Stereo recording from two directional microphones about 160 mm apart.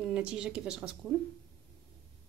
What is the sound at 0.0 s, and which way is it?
Speech, 5° right (ahead or behind).